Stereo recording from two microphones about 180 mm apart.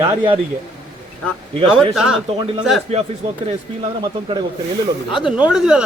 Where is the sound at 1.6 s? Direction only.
Centre (ahead or behind).